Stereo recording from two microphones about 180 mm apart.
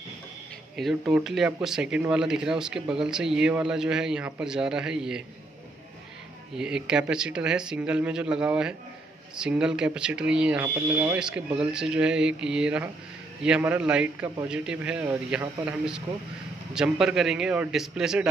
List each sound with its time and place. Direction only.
0.7 s speech: 5° right (ahead or behind)
6.5 s a man's voice: 5° right (ahead or behind)